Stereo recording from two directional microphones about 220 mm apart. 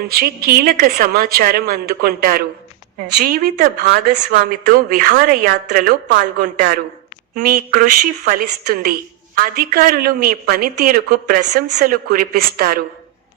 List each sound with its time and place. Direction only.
0.0 s a woman's voice: 45° right (ahead or behind)